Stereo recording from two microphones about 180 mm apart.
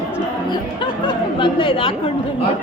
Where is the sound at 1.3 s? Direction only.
30° left (ahead or behind).